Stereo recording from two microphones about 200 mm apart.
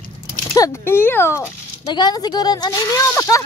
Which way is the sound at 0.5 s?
15° left (ahead or behind).